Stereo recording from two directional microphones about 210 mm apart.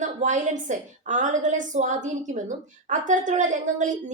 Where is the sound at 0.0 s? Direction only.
35° right (ahead or behind).